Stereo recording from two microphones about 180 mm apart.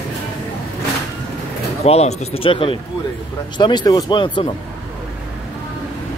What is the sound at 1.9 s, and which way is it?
Speech, 35° left (ahead or behind).